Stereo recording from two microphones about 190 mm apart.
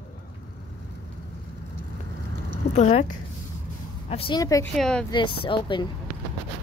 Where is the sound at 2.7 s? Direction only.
40° left (ahead or behind).